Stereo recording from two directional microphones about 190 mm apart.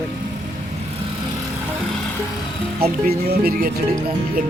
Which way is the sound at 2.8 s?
55° right (ahead or behind).